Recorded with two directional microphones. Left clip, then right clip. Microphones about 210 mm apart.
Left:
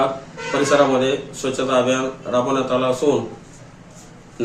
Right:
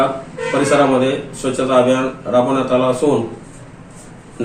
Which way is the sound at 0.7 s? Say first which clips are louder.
Right 1 dB; 10° left (ahead or behind).